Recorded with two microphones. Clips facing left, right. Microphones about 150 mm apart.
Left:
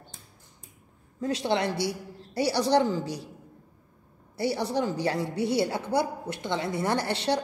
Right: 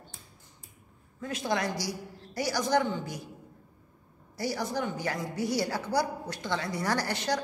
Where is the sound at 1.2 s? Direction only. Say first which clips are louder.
Left 4 dB; 30° left (ahead or behind).